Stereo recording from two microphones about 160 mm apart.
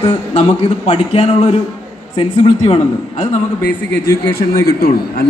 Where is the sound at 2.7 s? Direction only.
40° left (ahead or behind).